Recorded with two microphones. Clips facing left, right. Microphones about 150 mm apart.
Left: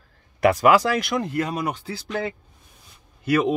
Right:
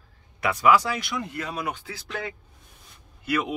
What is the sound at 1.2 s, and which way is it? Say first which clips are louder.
Speech: left 7 dB; 45° left (ahead or behind).